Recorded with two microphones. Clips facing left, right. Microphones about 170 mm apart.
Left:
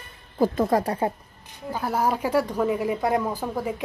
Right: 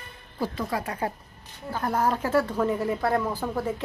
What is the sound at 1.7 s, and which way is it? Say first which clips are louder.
Speech: left 1 dB; 10° left (ahead or behind).